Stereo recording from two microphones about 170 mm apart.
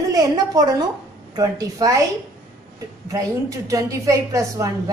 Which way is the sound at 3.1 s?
20° right (ahead or behind).